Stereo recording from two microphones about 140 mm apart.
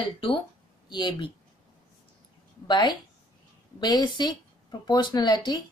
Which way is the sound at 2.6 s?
30° left (ahead or behind).